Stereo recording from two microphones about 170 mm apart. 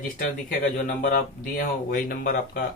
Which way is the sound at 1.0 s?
55° left (ahead or behind).